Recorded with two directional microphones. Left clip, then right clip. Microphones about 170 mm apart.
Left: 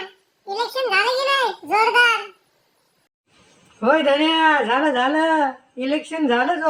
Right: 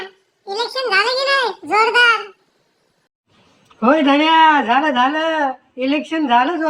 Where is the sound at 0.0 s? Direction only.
25° right (ahead or behind).